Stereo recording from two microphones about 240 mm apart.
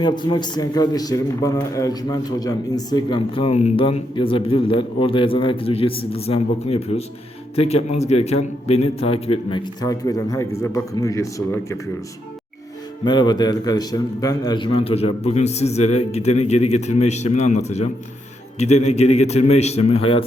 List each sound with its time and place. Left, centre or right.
0.0 s a man's voice: centre
13.1 s a man's voice: centre